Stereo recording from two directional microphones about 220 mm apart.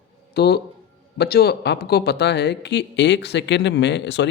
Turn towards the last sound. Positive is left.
turn(degrees=55)  # may be behind; listen again after turning